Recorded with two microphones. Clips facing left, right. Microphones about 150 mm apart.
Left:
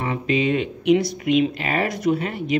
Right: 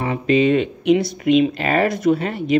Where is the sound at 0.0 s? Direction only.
35° right (ahead or behind).